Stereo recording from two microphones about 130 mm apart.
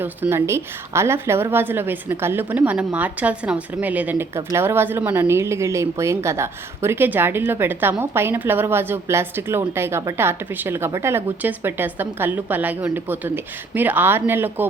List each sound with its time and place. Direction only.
0.0 s a woman's voice: 15° right (ahead or behind)